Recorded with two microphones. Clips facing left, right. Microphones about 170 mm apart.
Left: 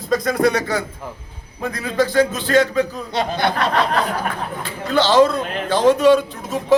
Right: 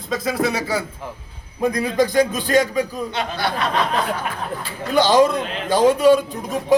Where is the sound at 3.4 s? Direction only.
50° left (ahead or behind).